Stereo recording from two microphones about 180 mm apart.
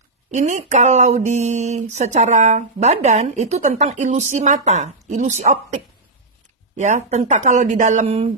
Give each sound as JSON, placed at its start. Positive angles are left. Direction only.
{"t": 0.3, "sound": "speech", "side_deg": -40}
{"t": 6.8, "sound": "speech", "side_deg": -40}